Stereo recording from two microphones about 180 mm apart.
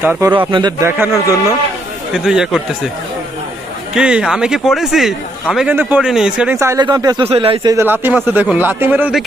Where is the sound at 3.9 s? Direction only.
5° right (ahead or behind); by 7.7 s 30° right (ahead or behind).